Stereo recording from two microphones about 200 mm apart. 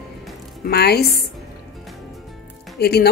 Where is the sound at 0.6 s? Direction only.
50° left (ahead or behind).